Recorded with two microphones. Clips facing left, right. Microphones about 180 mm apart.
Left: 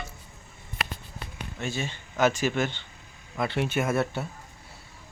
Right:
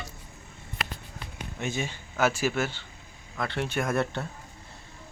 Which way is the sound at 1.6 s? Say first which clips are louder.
Right 1 dB; 15° right (ahead or behind).